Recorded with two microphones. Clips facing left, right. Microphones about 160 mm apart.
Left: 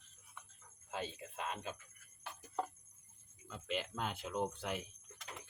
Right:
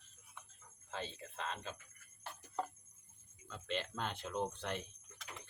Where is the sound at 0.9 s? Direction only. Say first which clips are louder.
Left 2 dB; 10° left (ahead or behind).